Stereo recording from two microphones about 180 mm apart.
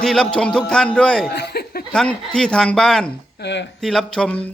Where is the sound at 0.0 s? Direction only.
Centre (ahead or behind).